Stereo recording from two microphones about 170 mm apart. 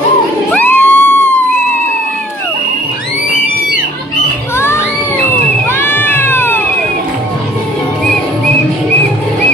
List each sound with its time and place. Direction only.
0.5 s music: 10° left (ahead or behind)
4.6 s crowd: 15° left (ahead or behind)
5.7 s cat: 15° left (ahead or behind)